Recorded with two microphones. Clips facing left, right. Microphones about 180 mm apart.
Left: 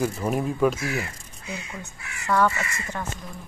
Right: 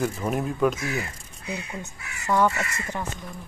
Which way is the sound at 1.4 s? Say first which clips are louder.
Right 2 dB; 60° right (ahead or behind).